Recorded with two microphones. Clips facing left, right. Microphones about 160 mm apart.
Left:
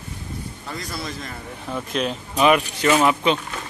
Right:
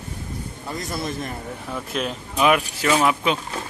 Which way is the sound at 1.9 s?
5° right (ahead or behind).